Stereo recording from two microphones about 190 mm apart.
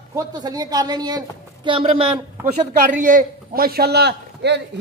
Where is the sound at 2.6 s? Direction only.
40° right (ahead or behind).